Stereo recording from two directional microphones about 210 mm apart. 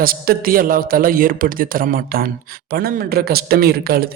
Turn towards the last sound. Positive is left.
turn(degrees=-45)  # may be behind; listen again after turning